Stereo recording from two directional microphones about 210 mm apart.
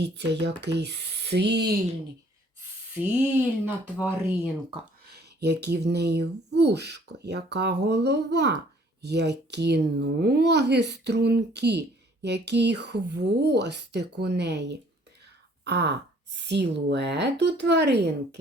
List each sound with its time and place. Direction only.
0.0 s speech: 55° right (ahead or behind)
3.9 s speech: 5° right (ahead or behind)
5.0 s speech: 50° right (ahead or behind)